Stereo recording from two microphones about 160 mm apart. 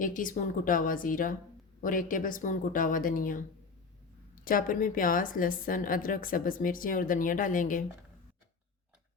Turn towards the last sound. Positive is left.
turn(degrees=55)  # may be behind; listen again after turning